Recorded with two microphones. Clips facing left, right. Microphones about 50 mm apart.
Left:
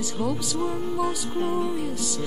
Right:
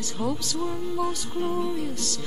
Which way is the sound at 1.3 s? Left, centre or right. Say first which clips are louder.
Left 1 dB; left.